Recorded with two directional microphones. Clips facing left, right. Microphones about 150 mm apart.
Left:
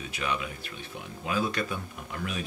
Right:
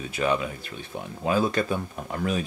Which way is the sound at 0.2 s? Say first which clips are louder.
Right 8 dB; 40° right (ahead or behind).